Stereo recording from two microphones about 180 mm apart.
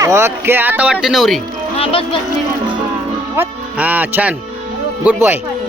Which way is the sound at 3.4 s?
10° right (ahead or behind).